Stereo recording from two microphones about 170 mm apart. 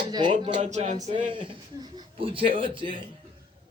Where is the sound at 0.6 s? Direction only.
40° right (ahead or behind).